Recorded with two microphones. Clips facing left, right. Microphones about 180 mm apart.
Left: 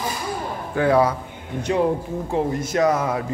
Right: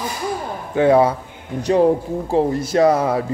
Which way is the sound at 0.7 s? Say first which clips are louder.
Right 4 dB; 25° right (ahead or behind).